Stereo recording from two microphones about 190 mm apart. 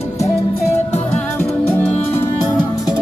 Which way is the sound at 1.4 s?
10° left (ahead or behind).